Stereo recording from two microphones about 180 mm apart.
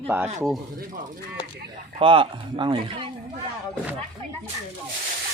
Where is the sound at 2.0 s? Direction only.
30° right (ahead or behind).